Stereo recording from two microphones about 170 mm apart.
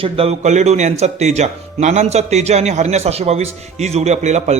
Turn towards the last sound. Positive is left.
turn(degrees=-40)  # may be behind; listen again after turning